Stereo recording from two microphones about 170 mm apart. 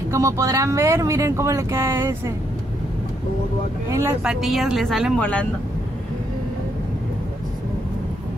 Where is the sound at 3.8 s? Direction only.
15° right (ahead or behind).